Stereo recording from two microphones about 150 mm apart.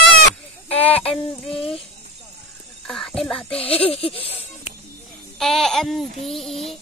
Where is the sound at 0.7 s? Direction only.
10° left (ahead or behind).